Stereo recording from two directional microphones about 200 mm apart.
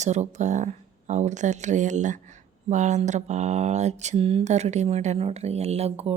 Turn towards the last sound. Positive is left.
turn(degrees=-30)  # may be behind; listen again after turning